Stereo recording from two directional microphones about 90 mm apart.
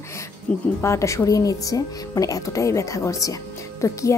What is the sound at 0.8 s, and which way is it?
Speech, 30° left (ahead or behind).